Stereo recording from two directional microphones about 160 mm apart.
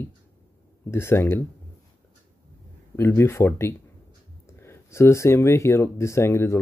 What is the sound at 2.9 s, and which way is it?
Speech, 15° left (ahead or behind).